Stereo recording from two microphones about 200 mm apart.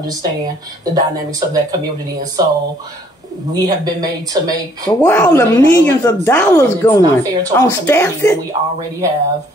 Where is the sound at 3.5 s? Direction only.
20° right (ahead or behind).